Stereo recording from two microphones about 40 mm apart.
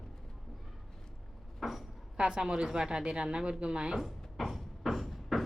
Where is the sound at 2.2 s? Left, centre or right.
Centre.